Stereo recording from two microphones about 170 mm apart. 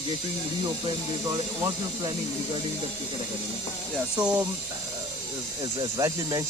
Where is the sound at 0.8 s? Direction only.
25° right (ahead or behind).